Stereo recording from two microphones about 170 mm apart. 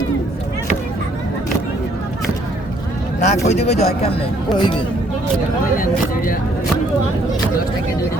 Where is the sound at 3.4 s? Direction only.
40° left (ahead or behind).